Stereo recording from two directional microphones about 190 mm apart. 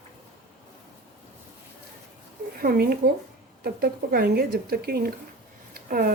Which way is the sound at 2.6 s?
50° right (ahead or behind).